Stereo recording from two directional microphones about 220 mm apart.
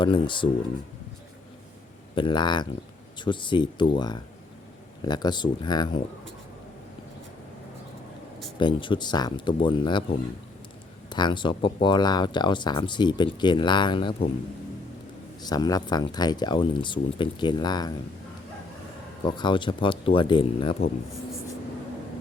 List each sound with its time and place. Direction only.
0.0 s speech: 20° left (ahead or behind)
2.1 s speech: 20° left (ahead or behind)
8.5 s speech: 20° left (ahead or behind)
11.1 s speech: 20° left (ahead or behind)
15.4 s speech: 20° left (ahead or behind)
19.2 s speech: 20° left (ahead or behind)